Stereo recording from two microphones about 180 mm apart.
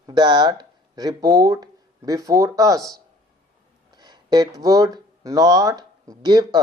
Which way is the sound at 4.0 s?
25° right (ahead or behind).